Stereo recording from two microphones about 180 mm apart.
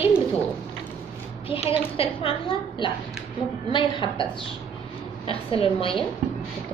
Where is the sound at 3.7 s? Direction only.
25° left (ahead or behind).